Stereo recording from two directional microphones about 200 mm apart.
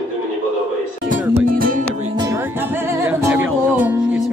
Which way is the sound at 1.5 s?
45° right (ahead or behind).